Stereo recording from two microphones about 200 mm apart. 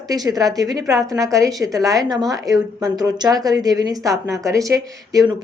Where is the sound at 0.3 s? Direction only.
20° right (ahead or behind).